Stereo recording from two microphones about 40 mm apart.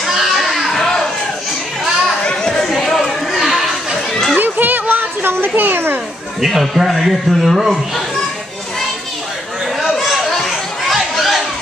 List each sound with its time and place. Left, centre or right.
0.0 s children playing: centre
0.7 s a sound: centre
2.2 s chatter: centre
4.4 s music: right
5.4 s children playing: right
6.4 s speech: centre
9.8 s chatter: centre
10.9 s a sound: centre